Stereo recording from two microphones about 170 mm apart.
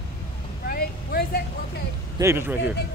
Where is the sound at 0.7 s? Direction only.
65° left (ahead or behind).